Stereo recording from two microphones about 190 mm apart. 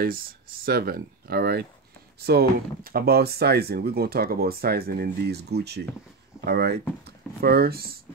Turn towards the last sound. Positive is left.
turn(degrees=-55)  # may be behind; listen again after turning